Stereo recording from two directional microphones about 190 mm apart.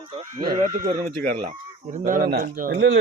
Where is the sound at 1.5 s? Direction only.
40° right (ahead or behind).